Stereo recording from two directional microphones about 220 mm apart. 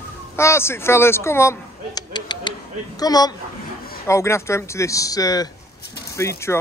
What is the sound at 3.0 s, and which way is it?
Speech, 15° left (ahead or behind).